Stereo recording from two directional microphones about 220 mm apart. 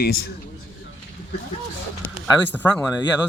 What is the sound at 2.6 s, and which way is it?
Speech, 5° left (ahead or behind).